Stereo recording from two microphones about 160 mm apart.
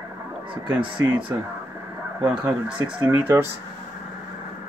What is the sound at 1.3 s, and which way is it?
Speech, 15° right (ahead or behind).